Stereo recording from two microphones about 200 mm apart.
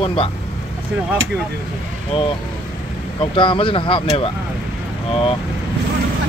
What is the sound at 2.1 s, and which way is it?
Speech, 30° left (ahead or behind).